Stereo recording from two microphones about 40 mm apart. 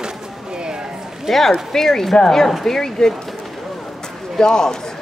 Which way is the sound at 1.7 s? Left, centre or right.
Centre.